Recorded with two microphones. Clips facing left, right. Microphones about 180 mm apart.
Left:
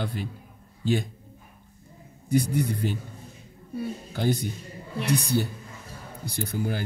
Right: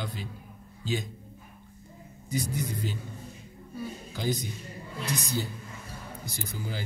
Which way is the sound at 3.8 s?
60° left (ahead or behind).